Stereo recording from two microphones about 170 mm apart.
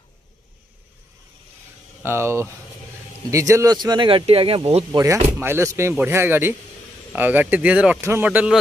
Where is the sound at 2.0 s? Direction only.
15° right (ahead or behind); by 4.9 s 35° right (ahead or behind).